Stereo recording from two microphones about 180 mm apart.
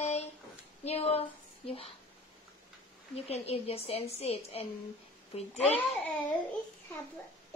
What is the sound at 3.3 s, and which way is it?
A woman's voice, 35° left (ahead or behind).